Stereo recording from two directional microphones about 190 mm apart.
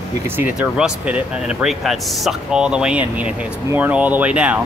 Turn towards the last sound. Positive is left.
turn(degrees=-5)  # may be behind; listen again after turning